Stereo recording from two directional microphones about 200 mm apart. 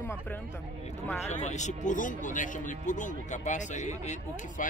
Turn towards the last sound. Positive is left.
turn(degrees=35)  # may be behind; listen again after turning